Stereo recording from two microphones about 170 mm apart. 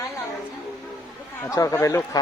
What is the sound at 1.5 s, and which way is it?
Speech, 20° left (ahead or behind).